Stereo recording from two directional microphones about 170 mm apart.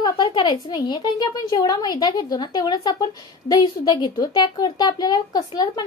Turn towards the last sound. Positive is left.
turn(degrees=25)  # may be behind; listen again after turning